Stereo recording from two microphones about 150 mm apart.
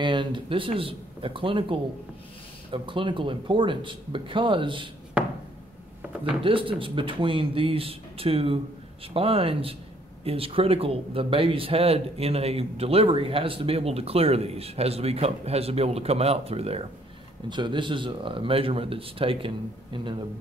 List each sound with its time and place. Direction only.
0.0 s speech: 30° right (ahead or behind)
5.2 s a sound: 5° right (ahead or behind)
6.4 s speech: 35° right (ahead or behind)
17.5 s speech: 30° right (ahead or behind)